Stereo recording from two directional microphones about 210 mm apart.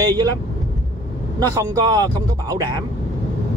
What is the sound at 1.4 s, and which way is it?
Speech, 20° right (ahead or behind).